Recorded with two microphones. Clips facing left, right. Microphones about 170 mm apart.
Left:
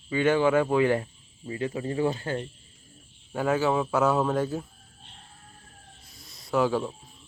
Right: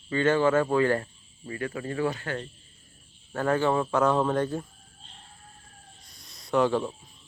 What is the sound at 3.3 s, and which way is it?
Speech, 10° left (ahead or behind).